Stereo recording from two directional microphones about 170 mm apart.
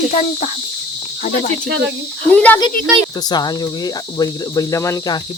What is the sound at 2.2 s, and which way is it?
Speech, 10° left (ahead or behind).